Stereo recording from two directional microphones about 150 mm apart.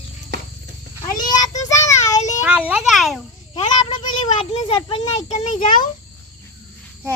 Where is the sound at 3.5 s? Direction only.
30° left (ahead or behind).